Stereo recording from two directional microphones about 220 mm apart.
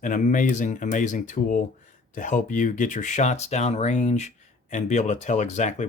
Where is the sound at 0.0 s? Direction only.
35° left (ahead or behind).